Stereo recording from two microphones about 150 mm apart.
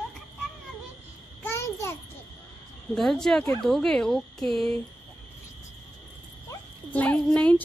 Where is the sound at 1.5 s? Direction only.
20° left (ahead or behind).